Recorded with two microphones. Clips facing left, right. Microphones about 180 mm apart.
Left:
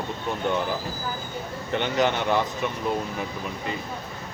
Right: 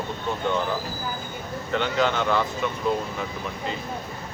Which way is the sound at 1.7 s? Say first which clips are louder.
Even; 20° left (ahead or behind).